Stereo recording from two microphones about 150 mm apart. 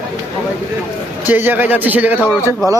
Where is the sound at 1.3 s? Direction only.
10° right (ahead or behind).